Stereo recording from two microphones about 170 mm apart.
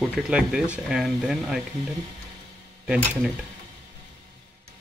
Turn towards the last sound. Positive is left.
turn(degrees=-5)  # may be behind; listen again after turning